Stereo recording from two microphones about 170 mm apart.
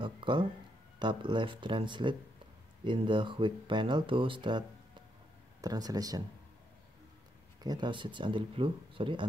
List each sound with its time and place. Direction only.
0.0 s speech: 30° right (ahead or behind)
7.6 s speech: 25° right (ahead or behind)